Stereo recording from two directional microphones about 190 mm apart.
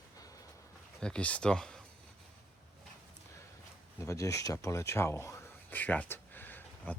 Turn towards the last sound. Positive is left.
turn(degrees=10)  # may be behind; listen again after turning